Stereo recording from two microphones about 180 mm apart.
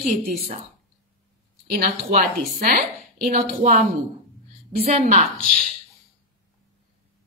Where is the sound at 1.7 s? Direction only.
50° right (ahead or behind).